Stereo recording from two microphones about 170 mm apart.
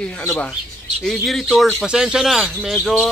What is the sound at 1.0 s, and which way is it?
Speech, centre (ahead or behind).